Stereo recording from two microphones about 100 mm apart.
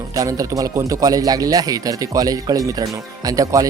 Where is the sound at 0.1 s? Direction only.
35° right (ahead or behind).